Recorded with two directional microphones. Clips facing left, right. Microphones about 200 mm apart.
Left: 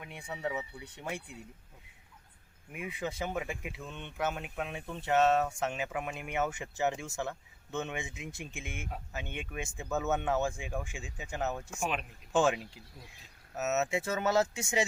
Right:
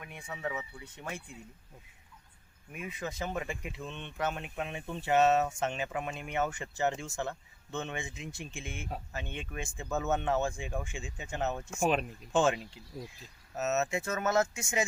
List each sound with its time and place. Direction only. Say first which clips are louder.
0.0 s speech: left 1 dB; 15° left (ahead or behind)
2.7 s speech: left 1 dB; 15° left (ahead or behind)
11.8 s speech: right 7 dB; 35° right (ahead or behind)
12.3 s speech: even; 5° left (ahead or behind)